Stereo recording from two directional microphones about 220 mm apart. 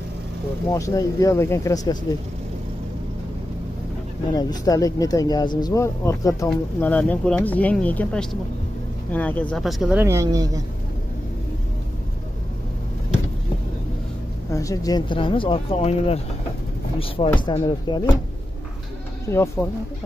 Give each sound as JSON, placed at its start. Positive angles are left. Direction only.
{"t": 0.7, "sound": "speech", "side_deg": 15}
{"t": 4.4, "sound": "speech", "side_deg": 15}
{"t": 14.5, "sound": "speech", "side_deg": 15}
{"t": 19.2, "sound": "speech", "side_deg": 15}